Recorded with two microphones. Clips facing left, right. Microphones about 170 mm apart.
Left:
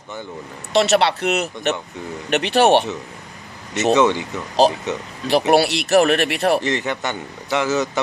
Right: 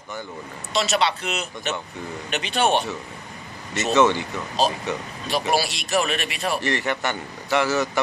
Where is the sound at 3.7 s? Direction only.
15° left (ahead or behind).